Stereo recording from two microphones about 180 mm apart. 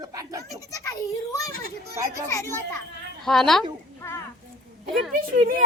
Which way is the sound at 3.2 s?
Centre (ahead or behind).